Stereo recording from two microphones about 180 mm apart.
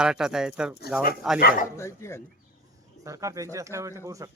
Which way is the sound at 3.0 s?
20° right (ahead or behind).